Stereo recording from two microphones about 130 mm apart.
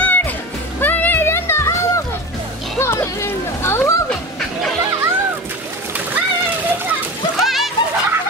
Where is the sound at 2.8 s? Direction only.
20° left (ahead or behind).